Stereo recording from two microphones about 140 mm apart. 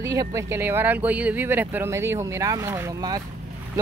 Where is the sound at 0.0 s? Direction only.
25° right (ahead or behind).